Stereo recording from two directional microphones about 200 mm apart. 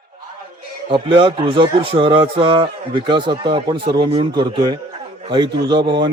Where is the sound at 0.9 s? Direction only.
25° right (ahead or behind).